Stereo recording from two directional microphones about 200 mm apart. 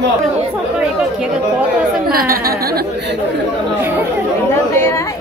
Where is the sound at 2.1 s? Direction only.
50° right (ahead or behind).